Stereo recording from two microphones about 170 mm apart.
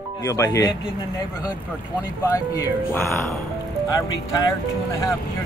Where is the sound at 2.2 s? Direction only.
15° left (ahead or behind).